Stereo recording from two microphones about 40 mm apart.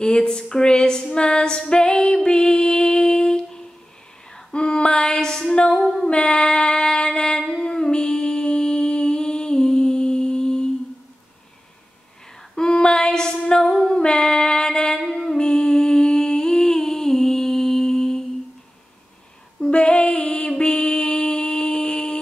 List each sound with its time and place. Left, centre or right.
0.0 s a sound: centre
2.2 s music: left
4.3 s female singing: centre
5.5 s a sound: left
12.5 s female singing: centre
19.6 s music: left